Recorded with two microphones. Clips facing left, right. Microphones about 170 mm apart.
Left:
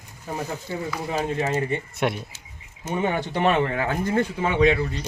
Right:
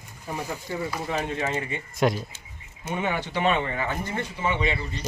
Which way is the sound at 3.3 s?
50° left (ahead or behind).